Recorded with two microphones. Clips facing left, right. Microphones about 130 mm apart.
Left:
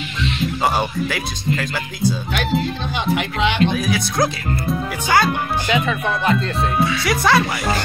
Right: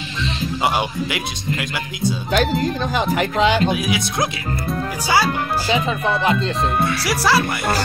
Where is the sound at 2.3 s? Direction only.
40° right (ahead or behind).